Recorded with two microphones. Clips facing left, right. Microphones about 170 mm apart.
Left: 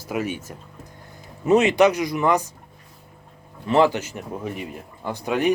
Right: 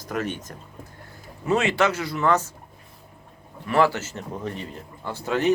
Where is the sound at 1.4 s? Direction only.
20° left (ahead or behind).